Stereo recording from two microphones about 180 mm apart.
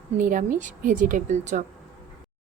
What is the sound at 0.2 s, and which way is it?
Speech, 50° right (ahead or behind).